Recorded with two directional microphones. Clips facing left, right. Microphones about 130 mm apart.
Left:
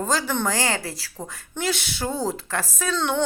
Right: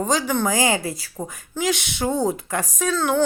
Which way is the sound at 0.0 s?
15° right (ahead or behind).